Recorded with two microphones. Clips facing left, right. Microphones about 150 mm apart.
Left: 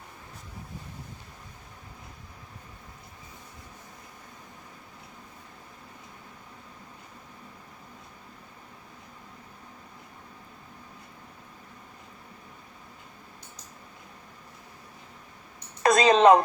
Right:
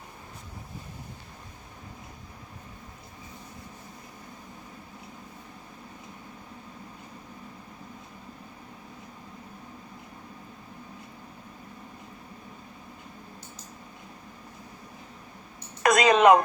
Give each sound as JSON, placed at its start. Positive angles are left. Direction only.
{"t": 15.8, "sound": "a woman's voice", "side_deg": 30}